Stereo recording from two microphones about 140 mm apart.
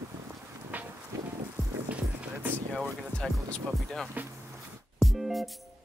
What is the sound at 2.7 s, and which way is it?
Speech, 5° right (ahead or behind).